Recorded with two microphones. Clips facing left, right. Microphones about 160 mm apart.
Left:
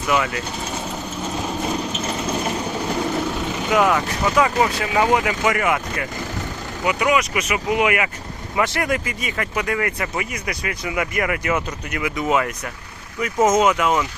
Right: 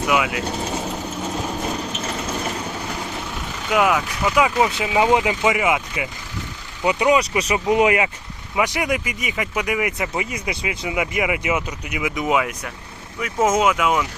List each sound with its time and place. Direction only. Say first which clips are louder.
0.1 s speech: left 1 dB; 5° right (ahead or behind)
3.7 s speech: even; 5° right (ahead or behind)
4.8 s speech: right 1 dB; 20° right (ahead or behind)
6.8 s speech: right 2 dB; 30° right (ahead or behind)
8.5 s speech: even; 10° right (ahead or behind)
12.4 s speech: even; 5° right (ahead or behind)